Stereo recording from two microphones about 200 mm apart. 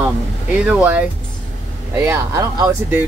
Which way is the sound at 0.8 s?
5° right (ahead or behind).